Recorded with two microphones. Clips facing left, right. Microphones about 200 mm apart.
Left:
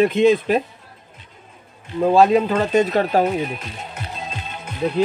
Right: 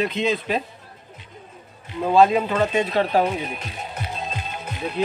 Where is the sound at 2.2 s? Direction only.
40° left (ahead or behind).